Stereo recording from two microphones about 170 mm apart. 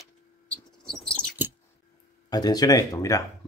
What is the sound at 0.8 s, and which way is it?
Mouse, 5° left (ahead or behind).